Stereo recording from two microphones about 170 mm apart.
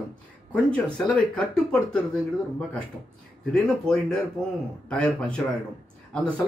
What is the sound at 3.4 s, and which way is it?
Speech, 5° left (ahead or behind).